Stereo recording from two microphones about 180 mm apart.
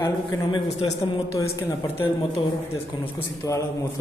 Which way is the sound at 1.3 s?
15° left (ahead or behind).